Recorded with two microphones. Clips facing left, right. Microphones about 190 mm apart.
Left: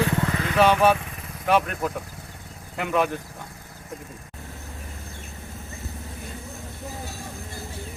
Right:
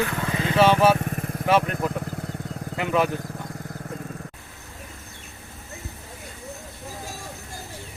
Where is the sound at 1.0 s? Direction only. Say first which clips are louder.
Right 10 dB; 50° right (ahead or behind).